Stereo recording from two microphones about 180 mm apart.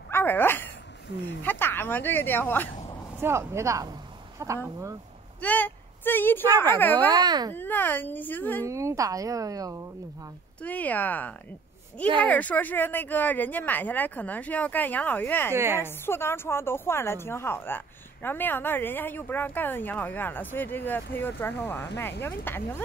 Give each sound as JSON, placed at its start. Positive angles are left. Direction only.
{"t": 0.1, "sound": "a sound", "side_deg": 10}
{"t": 1.4, "sound": "speech", "side_deg": 10}
{"t": 3.2, "sound": "a woman's voice", "side_deg": -15}
{"t": 5.4, "sound": "a sound", "side_deg": 10}
{"t": 6.8, "sound": "speech", "side_deg": 10}
{"t": 7.1, "sound": "a child's voice", "side_deg": -20}
{"t": 7.5, "sound": "speech", "side_deg": 10}
{"t": 8.6, "sound": "a woman's voice", "side_deg": -15}
{"t": 10.6, "sound": "speech", "side_deg": 10}
{"t": 15.5, "sound": "a woman's voice", "side_deg": -15}
{"t": 15.8, "sound": "speech", "side_deg": 15}